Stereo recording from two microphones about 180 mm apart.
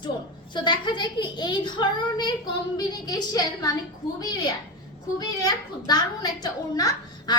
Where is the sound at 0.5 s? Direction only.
25° left (ahead or behind).